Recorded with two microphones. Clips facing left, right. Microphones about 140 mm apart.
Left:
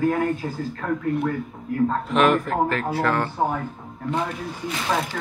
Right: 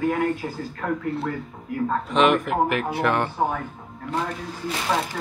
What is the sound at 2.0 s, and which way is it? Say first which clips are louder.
Speech: right 1 dB; centre (ahead or behind).